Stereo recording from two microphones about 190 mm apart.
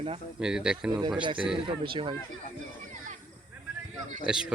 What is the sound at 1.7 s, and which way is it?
Speech, 25° right (ahead or behind).